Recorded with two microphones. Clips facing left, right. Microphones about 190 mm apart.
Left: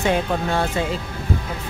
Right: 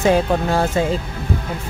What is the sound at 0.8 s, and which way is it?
Speech, 40° right (ahead or behind).